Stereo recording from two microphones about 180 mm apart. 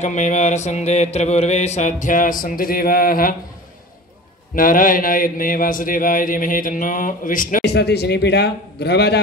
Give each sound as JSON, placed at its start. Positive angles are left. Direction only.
{"t": 0.0, "sound": "mantra", "side_deg": 40}
{"t": 4.6, "sound": "a man's voice", "side_deg": 50}
{"t": 7.7, "sound": "a man's voice", "side_deg": 65}